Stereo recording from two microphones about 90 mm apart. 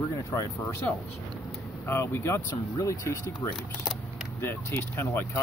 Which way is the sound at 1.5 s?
30° left (ahead or behind).